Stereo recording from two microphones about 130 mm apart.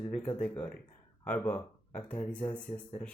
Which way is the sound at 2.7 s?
60° left (ahead or behind).